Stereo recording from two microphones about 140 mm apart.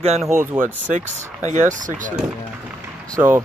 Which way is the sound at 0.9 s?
60° right (ahead or behind).